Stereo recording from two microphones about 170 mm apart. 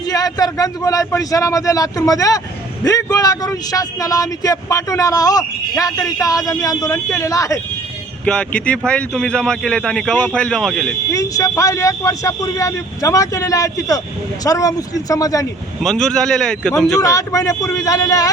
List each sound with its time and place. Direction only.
0.1 s speech: 20° left (ahead or behind)
8.2 s speech: 5° left (ahead or behind)
11.1 s speech: 20° left (ahead or behind)
15.8 s speech: 5° left (ahead or behind)
17.0 s speech: 20° left (ahead or behind)